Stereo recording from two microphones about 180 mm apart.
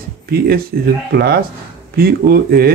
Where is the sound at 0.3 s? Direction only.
55° right (ahead or behind).